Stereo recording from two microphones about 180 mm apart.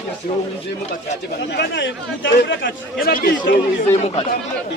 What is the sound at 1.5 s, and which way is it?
Speech, 70° left (ahead or behind).